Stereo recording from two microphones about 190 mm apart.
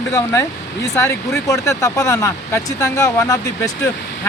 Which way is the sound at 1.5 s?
15° left (ahead or behind).